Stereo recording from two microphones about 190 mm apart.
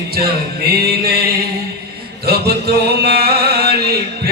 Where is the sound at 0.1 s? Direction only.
55° right (ahead or behind).